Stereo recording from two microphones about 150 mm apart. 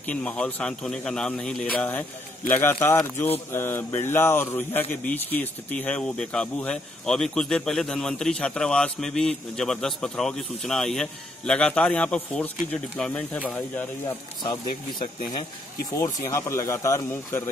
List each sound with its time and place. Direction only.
0.0 s speech: 10° left (ahead or behind)
14.4 s speech: 30° left (ahead or behind)